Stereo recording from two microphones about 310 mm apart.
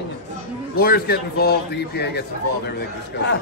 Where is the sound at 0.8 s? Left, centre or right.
Left.